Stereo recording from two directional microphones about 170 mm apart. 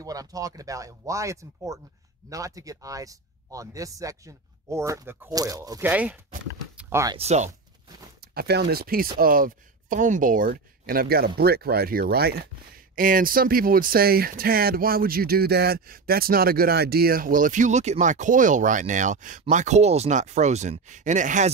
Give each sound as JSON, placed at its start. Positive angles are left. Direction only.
{"t": 0.0, "sound": "speech", "side_deg": -20}
{"t": 7.2, "sound": "speech", "side_deg": -40}
{"t": 8.2, "sound": "speech", "side_deg": -70}